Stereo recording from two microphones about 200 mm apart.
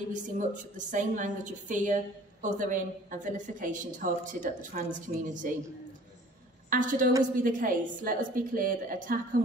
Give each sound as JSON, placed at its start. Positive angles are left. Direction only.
{"t": 0.1, "sound": "a woman's voice", "side_deg": -40}
{"t": 6.7, "sound": "a woman's voice", "side_deg": -40}